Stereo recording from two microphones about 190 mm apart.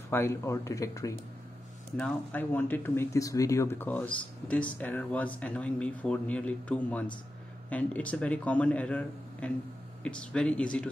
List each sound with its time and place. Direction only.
0.1 s speech: 15° left (ahead or behind)